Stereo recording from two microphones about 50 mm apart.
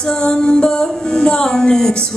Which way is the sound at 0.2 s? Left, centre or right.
Centre.